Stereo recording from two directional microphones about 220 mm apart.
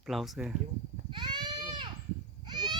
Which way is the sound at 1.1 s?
20° right (ahead or behind).